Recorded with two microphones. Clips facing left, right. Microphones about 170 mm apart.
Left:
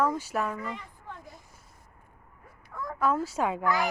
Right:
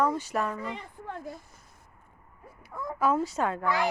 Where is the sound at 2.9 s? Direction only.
5° right (ahead or behind).